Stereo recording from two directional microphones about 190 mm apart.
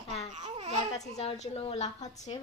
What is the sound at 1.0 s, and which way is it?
A woman's voice, 35° left (ahead or behind).